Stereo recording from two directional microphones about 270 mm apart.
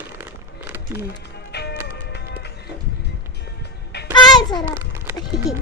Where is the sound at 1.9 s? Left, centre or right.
Left.